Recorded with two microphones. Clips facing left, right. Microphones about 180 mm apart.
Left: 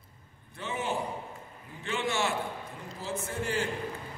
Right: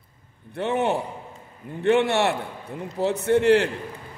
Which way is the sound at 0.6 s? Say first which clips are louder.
Right 10 dB; 65° right (ahead or behind).